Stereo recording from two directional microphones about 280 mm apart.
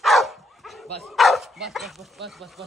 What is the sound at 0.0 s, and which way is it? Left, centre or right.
Dog, centre.